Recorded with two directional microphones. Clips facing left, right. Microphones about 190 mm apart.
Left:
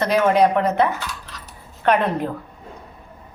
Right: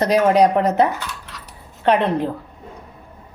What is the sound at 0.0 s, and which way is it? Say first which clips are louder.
A woman's voice: right 2 dB; 40° right (ahead or behind).